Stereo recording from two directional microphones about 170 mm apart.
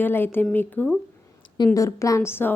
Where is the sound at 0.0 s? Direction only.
15° left (ahead or behind).